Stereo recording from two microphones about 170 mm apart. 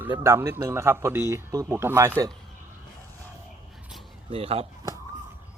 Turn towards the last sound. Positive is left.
turn(degrees=-35)  # may be behind; listen again after turning